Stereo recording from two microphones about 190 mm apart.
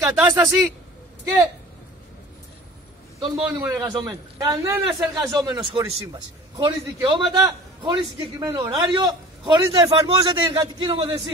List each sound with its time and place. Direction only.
0.0 s speech: 15° right (ahead or behind)
3.3 s a man's voice: 20° right (ahead or behind)